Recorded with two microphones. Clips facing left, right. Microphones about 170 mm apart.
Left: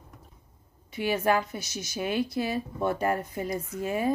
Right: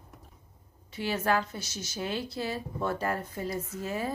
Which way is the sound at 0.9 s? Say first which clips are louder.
Left 3 dB; 15° left (ahead or behind).